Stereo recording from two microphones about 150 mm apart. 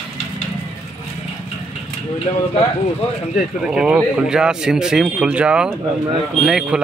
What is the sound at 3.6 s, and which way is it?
A man's voice, 5° right (ahead or behind).